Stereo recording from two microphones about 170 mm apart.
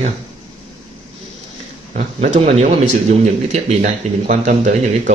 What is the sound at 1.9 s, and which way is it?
Speech, 40° right (ahead or behind).